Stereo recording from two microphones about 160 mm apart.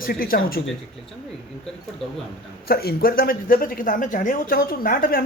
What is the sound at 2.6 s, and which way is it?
Speech, 75° left (ahead or behind).